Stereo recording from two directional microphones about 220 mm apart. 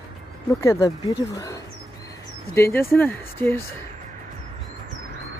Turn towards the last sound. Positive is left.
turn(degrees=10)  # may be behind; listen again after turning